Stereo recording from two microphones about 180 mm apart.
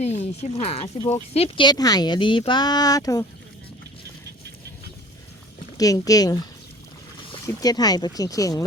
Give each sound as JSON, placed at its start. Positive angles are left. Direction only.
{"t": 0.0, "sound": "speech", "side_deg": 35}
{"t": 5.7, "sound": "speech", "side_deg": 20}